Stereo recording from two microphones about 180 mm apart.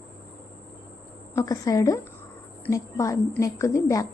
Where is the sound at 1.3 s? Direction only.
15° left (ahead or behind).